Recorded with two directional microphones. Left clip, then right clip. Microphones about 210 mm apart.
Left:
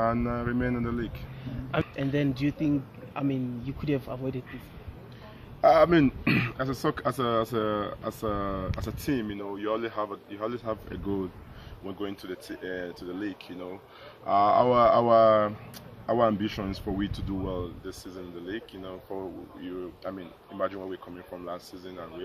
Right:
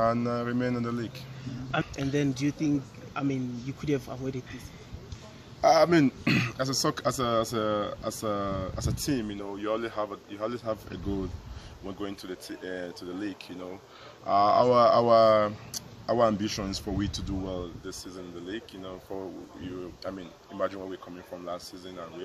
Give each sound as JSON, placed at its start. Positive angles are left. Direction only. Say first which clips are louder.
{"t": 0.0, "sound": "a man's voice", "louder": "right 1 dB", "side_deg": -5}
{"t": 1.7, "sound": "speech", "louder": "left 1 dB", "side_deg": 30}
{"t": 3.8, "sound": "speech", "louder": "even", "side_deg": 25}
{"t": 5.6, "sound": "a man's voice", "louder": "left 1 dB", "side_deg": 5}